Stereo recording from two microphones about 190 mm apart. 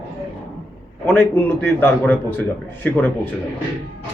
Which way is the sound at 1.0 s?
10° left (ahead or behind).